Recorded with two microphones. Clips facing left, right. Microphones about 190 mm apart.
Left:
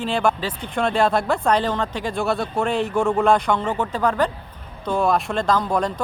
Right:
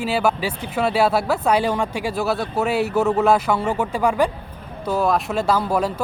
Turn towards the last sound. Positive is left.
turn(degrees=-5)  # may be behind; listen again after turning